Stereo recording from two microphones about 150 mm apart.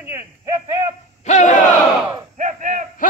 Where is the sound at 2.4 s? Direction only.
55° right (ahead or behind).